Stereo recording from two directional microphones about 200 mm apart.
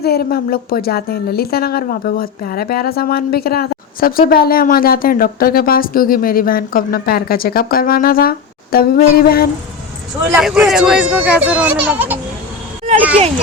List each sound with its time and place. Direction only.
0.0 s speech: 50° left (ahead or behind)
10.3 s speech: centre (ahead or behind)